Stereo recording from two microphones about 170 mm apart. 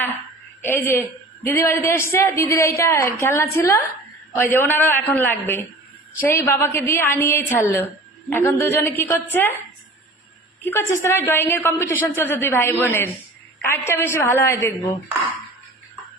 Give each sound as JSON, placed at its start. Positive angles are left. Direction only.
{"t": 0.7, "sound": "a woman's voice", "side_deg": 15}
{"t": 10.6, "sound": "a woman's voice", "side_deg": 15}